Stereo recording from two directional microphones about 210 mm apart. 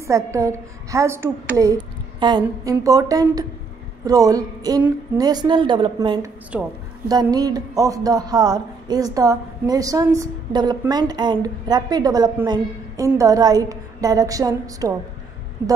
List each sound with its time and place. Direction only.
0.0 s a woman's voice: 15° right (ahead or behind)
6.5 s speech: 5° right (ahead or behind)
7.1 s speech: 20° right (ahead or behind)